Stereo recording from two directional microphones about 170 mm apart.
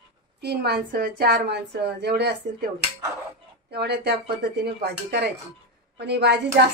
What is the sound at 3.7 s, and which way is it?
A woman's voice, 75° right (ahead or behind).